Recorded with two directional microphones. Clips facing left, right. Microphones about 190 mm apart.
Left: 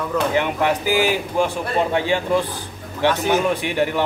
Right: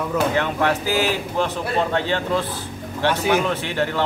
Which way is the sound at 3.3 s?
15° left (ahead or behind).